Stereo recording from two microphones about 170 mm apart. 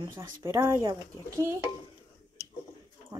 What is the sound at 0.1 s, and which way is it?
Speech, 15° right (ahead or behind).